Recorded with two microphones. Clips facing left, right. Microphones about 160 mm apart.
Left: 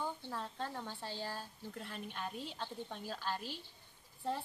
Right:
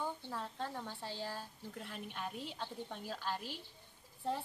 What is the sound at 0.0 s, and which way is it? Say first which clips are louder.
Speech: even; 5° right (ahead or behind).